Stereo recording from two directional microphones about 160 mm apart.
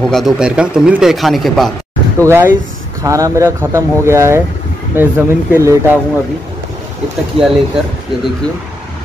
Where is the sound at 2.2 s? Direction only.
15° right (ahead or behind).